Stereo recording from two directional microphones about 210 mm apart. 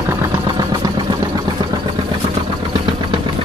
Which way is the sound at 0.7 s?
20° right (ahead or behind).